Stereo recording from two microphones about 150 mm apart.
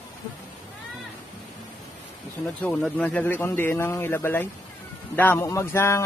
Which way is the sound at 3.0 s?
10° left (ahead or behind).